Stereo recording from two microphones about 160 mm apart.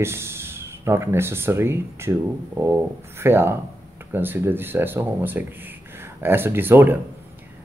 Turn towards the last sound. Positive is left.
turn(degrees=-10)  # may be behind; listen again after turning